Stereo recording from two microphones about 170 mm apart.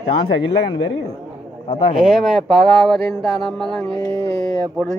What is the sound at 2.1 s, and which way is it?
Speech, centre (ahead or behind).